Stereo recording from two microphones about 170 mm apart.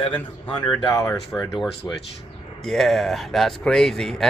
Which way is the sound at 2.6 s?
Centre (ahead or behind).